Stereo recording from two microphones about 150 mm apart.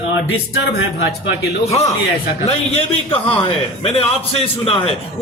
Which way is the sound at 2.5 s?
40° left (ahead or behind).